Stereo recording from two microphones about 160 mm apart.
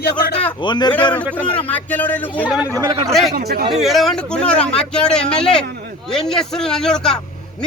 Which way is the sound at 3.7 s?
Centre (ahead or behind).